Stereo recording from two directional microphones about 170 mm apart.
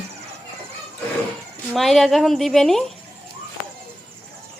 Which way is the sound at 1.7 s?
Centre (ahead or behind).